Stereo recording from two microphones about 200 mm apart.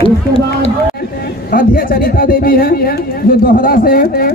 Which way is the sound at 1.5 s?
45° left (ahead or behind).